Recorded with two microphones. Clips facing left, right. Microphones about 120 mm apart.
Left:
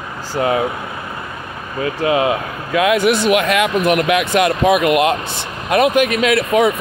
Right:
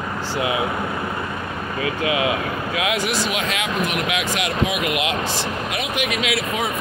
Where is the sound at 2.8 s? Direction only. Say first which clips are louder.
Left 10 dB; 50° left (ahead or behind).